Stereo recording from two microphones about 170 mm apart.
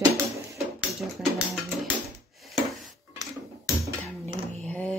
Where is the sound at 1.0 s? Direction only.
Centre (ahead or behind).